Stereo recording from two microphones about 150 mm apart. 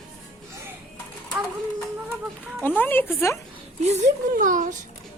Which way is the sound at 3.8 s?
55° right (ahead or behind).